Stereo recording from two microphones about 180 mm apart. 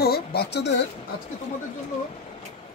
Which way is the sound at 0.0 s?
60° left (ahead or behind).